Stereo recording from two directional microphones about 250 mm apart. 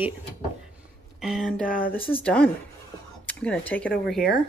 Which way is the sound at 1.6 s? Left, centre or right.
Left.